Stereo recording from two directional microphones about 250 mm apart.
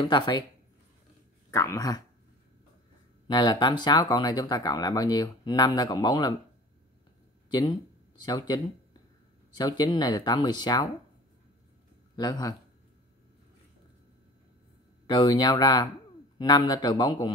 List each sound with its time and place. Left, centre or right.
0.0 s speech: centre
1.5 s speech: centre
3.3 s speech: centre
8.3 s speech: centre
9.6 s speech: centre
12.2 s speech: centre
15.0 s speech: centre